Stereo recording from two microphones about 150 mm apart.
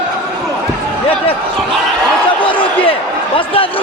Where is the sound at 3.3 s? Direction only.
35° left (ahead or behind).